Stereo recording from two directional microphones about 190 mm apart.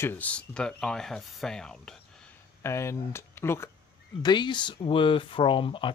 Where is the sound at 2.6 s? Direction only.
15° left (ahead or behind).